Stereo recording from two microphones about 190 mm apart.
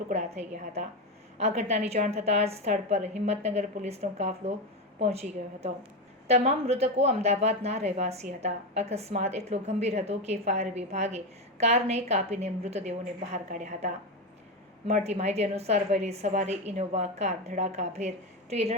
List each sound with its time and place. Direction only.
0.1 s speech: 35° right (ahead or behind)